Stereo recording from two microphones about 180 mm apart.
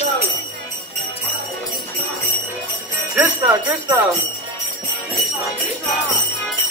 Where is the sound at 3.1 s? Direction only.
10° right (ahead or behind).